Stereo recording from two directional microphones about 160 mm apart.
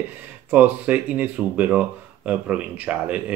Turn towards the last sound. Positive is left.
turn(degrees=-10)  # may be behind; listen again after turning